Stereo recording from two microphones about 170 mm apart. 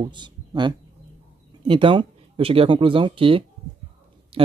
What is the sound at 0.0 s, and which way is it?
Speech, 25° right (ahead or behind).